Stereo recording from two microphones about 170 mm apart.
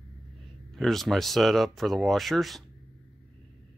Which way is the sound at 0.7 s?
Centre (ahead or behind).